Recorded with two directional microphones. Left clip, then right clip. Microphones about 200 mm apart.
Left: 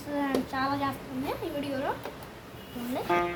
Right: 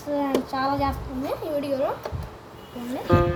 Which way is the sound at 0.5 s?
20° left (ahead or behind).